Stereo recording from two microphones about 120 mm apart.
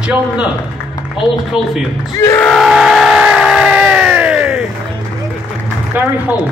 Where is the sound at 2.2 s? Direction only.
20° left (ahead or behind).